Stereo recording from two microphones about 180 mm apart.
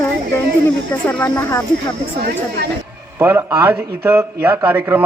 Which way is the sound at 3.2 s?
15° right (ahead or behind).